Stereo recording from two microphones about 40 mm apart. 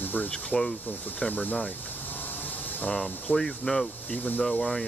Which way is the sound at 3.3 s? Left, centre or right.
Centre.